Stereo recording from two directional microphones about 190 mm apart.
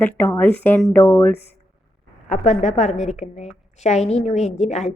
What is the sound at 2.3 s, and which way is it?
A woman's voice, 35° left (ahead or behind).